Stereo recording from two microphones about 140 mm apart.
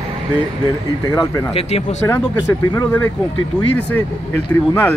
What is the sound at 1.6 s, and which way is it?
Speech, 45° left (ahead or behind).